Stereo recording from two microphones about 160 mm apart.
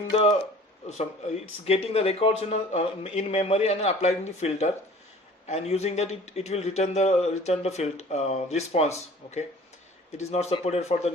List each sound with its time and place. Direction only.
0.1 s a man's voice: 40° left (ahead or behind)
1.6 s a man's voice: 40° left (ahead or behind)